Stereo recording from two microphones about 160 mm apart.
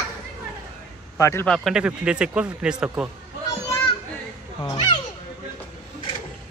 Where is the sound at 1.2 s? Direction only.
15° left (ahead or behind).